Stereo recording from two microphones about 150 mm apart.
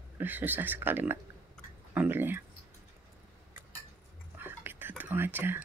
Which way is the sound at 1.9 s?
10° right (ahead or behind).